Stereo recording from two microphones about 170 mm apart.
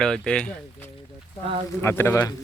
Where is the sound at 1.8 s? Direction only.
15° left (ahead or behind).